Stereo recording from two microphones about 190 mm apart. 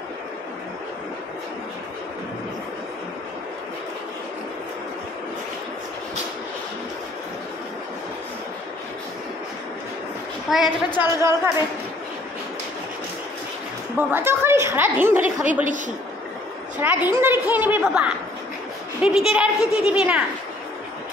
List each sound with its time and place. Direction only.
10.5 s a child's voice: centre (ahead or behind)
11.0 s a woman's voice: 15° right (ahead or behind)
13.9 s a woman's voice: 10° right (ahead or behind)
16.8 s a woman's voice: 10° right (ahead or behind)